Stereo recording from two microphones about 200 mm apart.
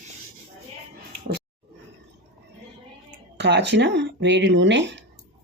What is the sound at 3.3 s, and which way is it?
Speech, 60° right (ahead or behind).